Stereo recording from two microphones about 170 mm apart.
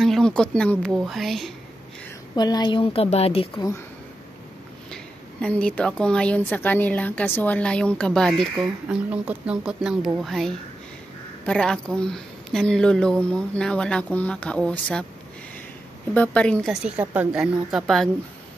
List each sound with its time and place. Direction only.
0.0 s a woman's voice: 5° left (ahead or behind)
2.3 s a woman's voice: 25° left (ahead or behind)
3.5 s speech: 20° left (ahead or behind)
4.9 s a woman's voice: 5° left (ahead or behind)
16.1 s a woman's voice: 5° left (ahead or behind)